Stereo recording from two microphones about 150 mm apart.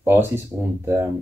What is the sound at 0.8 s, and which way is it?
Speech, 20° right (ahead or behind).